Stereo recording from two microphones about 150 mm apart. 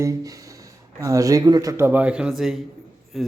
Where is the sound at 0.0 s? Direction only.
20° right (ahead or behind).